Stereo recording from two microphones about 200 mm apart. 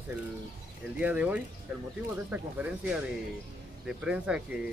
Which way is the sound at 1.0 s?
5° right (ahead or behind).